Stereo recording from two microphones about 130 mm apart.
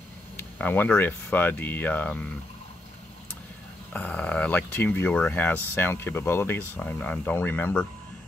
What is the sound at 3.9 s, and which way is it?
Speech, 10° left (ahead or behind).